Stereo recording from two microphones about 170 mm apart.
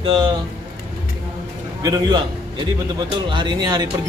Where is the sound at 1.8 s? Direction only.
25° right (ahead or behind).